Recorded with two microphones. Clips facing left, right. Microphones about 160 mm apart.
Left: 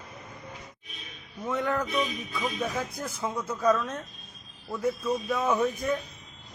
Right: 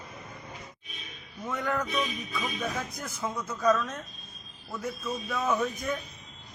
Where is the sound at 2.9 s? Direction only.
30° left (ahead or behind).